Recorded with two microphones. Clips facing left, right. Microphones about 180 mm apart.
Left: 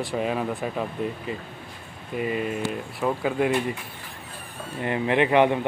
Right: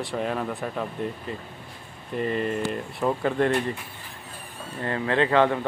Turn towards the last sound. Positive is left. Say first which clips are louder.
# left 1 dB
turn(degrees=15)  # may be behind; listen again after turning